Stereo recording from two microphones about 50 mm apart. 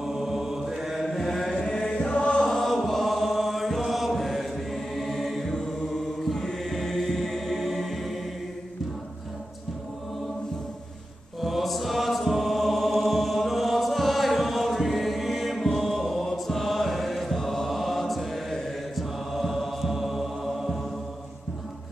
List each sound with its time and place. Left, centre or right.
0.0 s chant: centre
2.6 s chant: centre
6.2 s choir: centre
11.4 s chant: centre